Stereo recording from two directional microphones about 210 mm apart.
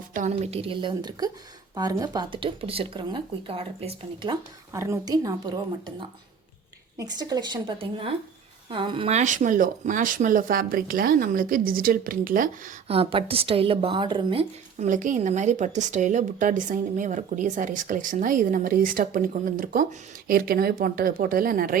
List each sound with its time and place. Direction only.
0.1 s a woman's voice: 35° right (ahead or behind)
12.9 s a woman's voice: 25° right (ahead or behind); by 21.8 s 40° right (ahead or behind)